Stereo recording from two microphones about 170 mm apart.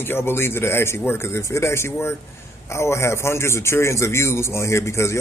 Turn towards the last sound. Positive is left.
turn(degrees=15)  # may be behind; listen again after turning